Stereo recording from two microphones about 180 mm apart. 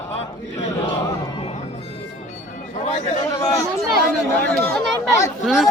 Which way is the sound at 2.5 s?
45° left (ahead or behind).